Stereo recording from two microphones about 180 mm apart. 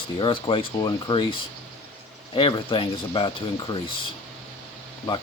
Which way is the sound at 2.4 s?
30° left (ahead or behind).